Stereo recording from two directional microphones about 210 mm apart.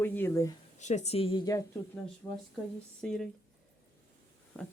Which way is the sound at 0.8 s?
35° left (ahead or behind).